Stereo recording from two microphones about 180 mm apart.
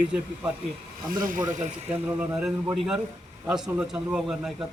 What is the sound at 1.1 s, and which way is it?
Speech, 50° right (ahead or behind).